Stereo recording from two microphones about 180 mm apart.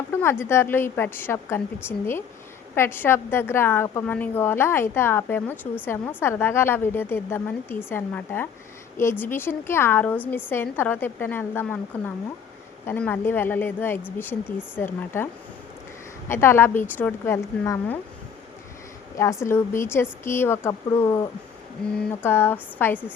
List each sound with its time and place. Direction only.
0.1 s a woman's voice: 15° left (ahead or behind)
16.3 s a woman's voice: 15° left (ahead or behind)
19.1 s a woman's voice: 15° left (ahead or behind)
21.8 s a woman's voice: 5° left (ahead or behind)